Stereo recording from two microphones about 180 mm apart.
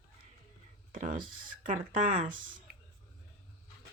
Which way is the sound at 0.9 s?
50° right (ahead or behind).